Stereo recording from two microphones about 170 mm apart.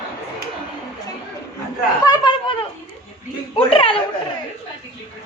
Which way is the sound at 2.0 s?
25° left (ahead or behind).